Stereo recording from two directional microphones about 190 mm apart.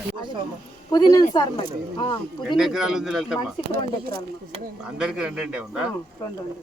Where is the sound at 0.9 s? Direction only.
20° left (ahead or behind).